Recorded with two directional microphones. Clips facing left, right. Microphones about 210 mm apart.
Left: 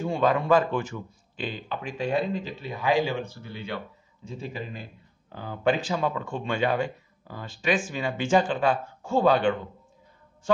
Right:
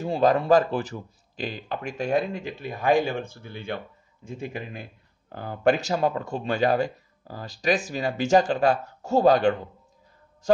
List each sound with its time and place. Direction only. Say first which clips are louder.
0.0 s speech: right 2 dB; 40° right (ahead or behind)